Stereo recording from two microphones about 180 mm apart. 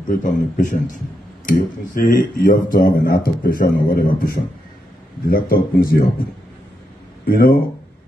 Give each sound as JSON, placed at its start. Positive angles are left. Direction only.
{"t": 0.1, "sound": "a man's voice", "side_deg": 45}
{"t": 7.2, "sound": "speech", "side_deg": 55}